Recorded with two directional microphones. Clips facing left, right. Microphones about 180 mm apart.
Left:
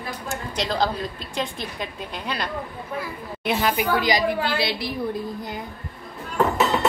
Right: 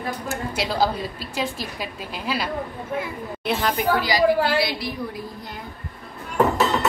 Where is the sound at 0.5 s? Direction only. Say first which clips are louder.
Right 1 dB; 5° right (ahead or behind).